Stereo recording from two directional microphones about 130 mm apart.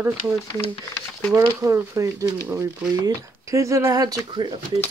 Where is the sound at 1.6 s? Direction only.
25° right (ahead or behind).